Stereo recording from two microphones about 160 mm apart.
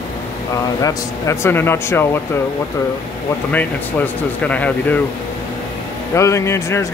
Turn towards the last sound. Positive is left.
turn(degrees=15)  # may be behind; listen again after turning